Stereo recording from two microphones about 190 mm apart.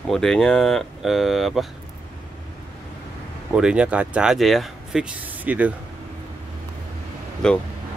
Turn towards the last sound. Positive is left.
turn(degrees=5)  # may be behind; listen again after turning